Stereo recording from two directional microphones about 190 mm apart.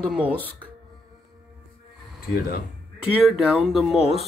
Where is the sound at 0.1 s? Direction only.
5° right (ahead or behind).